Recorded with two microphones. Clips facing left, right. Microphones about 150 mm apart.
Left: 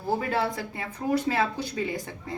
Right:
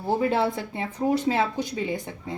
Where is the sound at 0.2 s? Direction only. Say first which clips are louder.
Right 4 dB; 25° right (ahead or behind).